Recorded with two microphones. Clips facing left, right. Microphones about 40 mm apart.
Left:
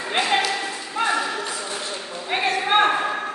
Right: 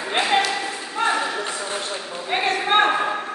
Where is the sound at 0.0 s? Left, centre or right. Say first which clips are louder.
Right 1 dB; centre.